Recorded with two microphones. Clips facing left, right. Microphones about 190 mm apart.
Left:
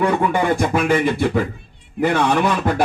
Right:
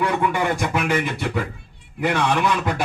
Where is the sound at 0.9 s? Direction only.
50° left (ahead or behind).